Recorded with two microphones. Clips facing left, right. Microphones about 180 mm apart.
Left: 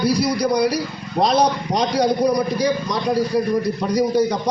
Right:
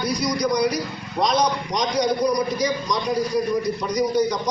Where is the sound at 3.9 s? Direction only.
30° left (ahead or behind).